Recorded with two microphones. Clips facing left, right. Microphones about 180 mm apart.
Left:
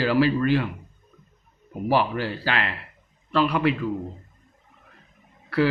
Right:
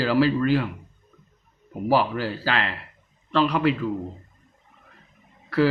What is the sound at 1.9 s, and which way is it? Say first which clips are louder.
Speech: right 1 dB; 40° right (ahead or behind).